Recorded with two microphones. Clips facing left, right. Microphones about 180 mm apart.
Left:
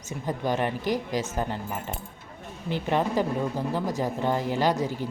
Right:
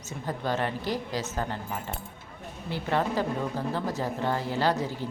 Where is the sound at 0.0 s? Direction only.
15° left (ahead or behind).